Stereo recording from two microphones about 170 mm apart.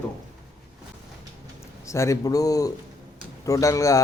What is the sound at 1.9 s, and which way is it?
Speech, 20° left (ahead or behind).